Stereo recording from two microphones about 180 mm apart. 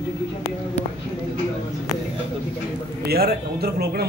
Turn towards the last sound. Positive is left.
turn(degrees=-60)  # may be behind; listen again after turning